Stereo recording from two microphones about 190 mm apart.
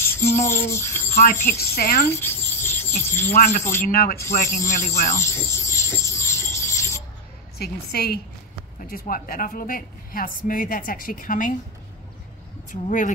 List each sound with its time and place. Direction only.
0.0 s a sound: 15° left (ahead or behind)
1.6 s a woman's voice: 50° left (ahead or behind)
2.0 s a sound: 10° left (ahead or behind)
3.3 s a woman's voice: 40° left (ahead or behind)
5.2 s rub: 15° left (ahead or behind)
7.5 s a woman's voice: 55° left (ahead or behind)
8.7 s a woman's voice: 45° left (ahead or behind)
12.8 s a woman's voice: 45° left (ahead or behind)